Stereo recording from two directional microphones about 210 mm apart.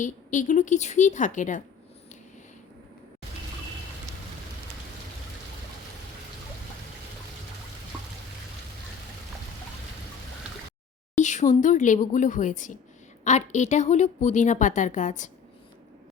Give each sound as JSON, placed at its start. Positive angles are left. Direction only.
{"t": 0.0, "sound": "a woman's voice", "side_deg": 35}
{"t": 11.2, "sound": "a woman's voice", "side_deg": 35}